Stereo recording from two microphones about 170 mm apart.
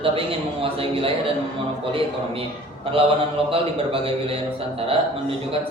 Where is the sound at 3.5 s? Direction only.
35° right (ahead or behind).